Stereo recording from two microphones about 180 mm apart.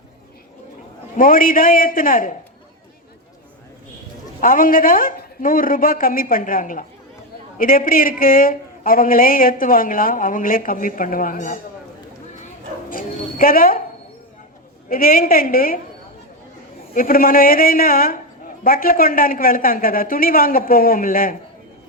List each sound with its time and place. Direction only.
1.1 s a man's voice: 50° left (ahead or behind)
4.4 s a man's voice: 50° left (ahead or behind)
12.9 s a woman's voice: 50° left (ahead or behind)
14.8 s a man's voice: 55° left (ahead or behind)
16.9 s a man's voice: 55° left (ahead or behind)